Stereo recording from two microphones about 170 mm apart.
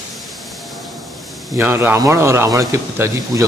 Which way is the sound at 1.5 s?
15° right (ahead or behind).